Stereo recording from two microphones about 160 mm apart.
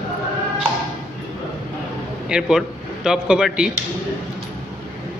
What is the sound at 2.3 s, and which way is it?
A man's voice, 5° right (ahead or behind).